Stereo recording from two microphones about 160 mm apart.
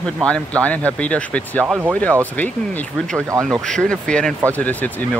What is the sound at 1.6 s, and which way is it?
Speech, 10° right (ahead or behind).